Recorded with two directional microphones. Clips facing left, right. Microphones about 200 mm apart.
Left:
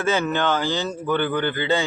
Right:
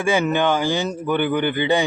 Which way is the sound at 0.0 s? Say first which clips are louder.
Right 3 dB; 15° right (ahead or behind).